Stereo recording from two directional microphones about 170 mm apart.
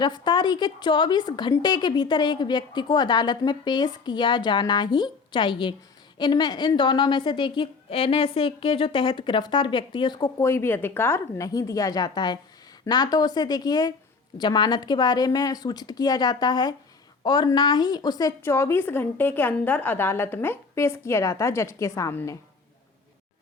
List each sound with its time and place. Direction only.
0.0 s a woman's voice: 25° left (ahead or behind)